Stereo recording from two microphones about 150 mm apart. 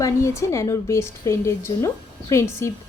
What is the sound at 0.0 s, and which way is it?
A woman's voice, 20° left (ahead or behind).